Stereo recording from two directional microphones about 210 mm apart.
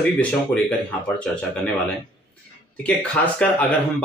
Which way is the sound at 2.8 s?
5° left (ahead or behind).